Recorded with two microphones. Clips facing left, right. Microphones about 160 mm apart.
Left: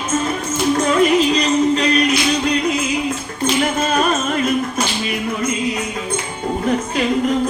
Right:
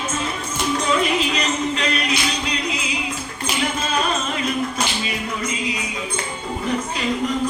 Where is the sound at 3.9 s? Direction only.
50° left (ahead or behind).